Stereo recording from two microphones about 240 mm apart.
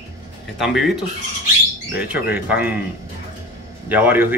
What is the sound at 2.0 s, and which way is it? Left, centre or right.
Speech, centre.